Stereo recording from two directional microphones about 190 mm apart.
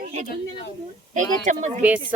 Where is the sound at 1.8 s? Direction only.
10° right (ahead or behind).